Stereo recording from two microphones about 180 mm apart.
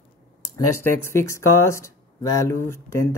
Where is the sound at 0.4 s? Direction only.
15° left (ahead or behind).